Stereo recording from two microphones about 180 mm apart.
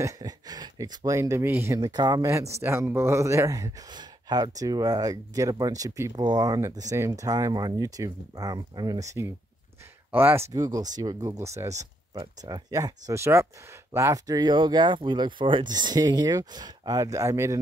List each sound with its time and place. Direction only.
0.0 s speech: 20° right (ahead or behind)